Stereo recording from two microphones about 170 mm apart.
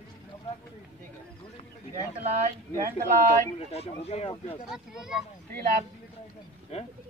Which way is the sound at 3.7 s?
40° left (ahead or behind).